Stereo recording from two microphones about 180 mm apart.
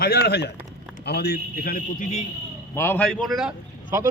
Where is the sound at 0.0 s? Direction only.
60° left (ahead or behind); by 2.2 s 45° left (ahead or behind).